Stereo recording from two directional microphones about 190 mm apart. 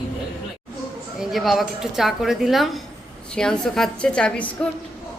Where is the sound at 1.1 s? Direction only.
Centre (ahead or behind).